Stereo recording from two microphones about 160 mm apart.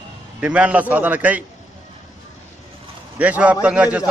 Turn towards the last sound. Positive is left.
turn(degrees=-10)  # may be behind; listen again after turning